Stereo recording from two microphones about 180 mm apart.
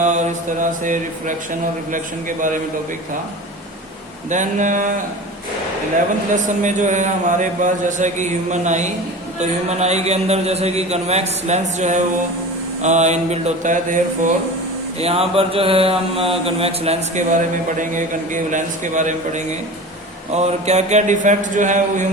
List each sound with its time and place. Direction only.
0.0 s a man's voice: 40° right (ahead or behind)
4.3 s a man's voice: 45° right (ahead or behind)
6.3 s a man's voice: 45° right (ahead or behind)
14.9 s a man's voice: 35° right (ahead or behind)